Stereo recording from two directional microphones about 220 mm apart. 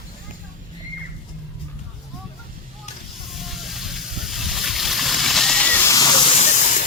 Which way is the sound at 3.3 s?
Centre (ahead or behind).